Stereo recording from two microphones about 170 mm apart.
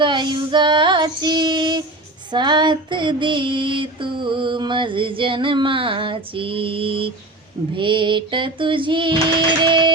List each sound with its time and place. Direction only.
0.0 s female singing: 25° right (ahead or behind)